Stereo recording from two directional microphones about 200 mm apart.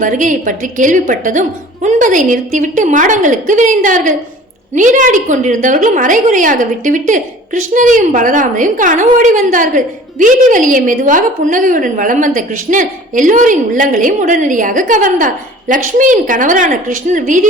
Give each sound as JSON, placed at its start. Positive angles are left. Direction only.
{"t": 0.0, "sound": "a woman's voice", "side_deg": -40}